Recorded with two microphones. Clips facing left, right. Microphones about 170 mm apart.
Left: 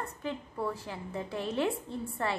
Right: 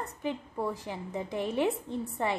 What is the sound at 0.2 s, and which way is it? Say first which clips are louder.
A woman's voice: right 3 dB; 15° right (ahead or behind).